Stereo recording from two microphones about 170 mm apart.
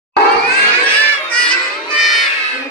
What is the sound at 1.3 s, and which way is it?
Children shouting, 5° left (ahead or behind).